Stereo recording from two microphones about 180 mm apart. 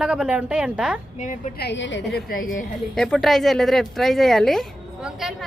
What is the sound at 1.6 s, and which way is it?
Speech, 85° left.